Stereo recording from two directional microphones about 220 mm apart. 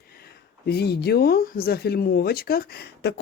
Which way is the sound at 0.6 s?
45° left (ahead or behind).